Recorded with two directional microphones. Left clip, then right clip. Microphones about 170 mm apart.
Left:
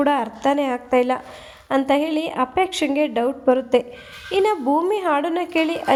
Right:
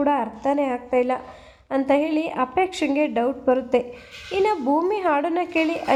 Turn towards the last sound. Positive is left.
turn(degrees=30)  # may be behind; listen again after turning